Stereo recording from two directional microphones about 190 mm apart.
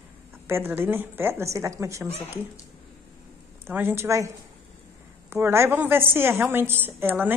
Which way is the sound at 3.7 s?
10° right (ahead or behind).